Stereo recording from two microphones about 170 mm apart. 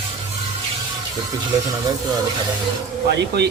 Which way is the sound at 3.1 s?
80° right.